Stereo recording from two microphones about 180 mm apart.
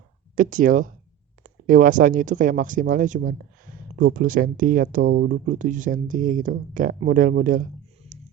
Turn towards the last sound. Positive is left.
turn(degrees=-50)  # may be behind; listen again after turning